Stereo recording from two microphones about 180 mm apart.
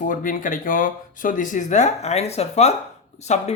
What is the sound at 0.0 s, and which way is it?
Speech, 50° left (ahead or behind).